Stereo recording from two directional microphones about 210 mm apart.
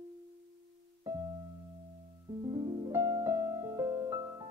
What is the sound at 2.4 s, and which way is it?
Music, 20° right (ahead or behind).